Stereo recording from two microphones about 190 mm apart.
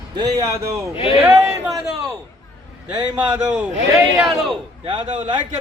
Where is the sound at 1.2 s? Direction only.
5° right (ahead or behind).